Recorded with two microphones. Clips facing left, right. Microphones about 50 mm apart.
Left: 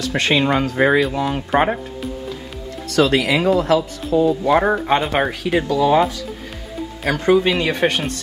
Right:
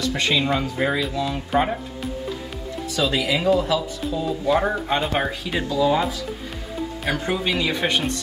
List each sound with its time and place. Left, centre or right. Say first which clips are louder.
0.0 s speech: left 4 dB; left
2.9 s speech: left 6 dB; left
5.7 s speech: left 4 dB; left
7.5 s speech: left 4 dB; left